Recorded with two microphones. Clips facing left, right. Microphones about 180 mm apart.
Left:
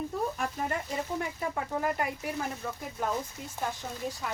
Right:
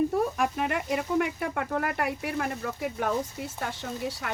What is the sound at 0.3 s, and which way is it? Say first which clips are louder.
Speech: right 5 dB; 75° right (ahead or behind).